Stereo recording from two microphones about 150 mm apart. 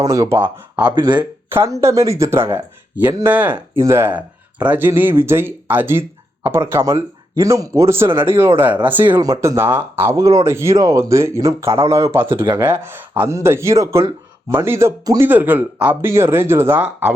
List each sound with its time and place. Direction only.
0.0 s speech: 20° right (ahead or behind)
0.9 s speech: 30° right (ahead or behind)
1.5 s speech: 15° right (ahead or behind)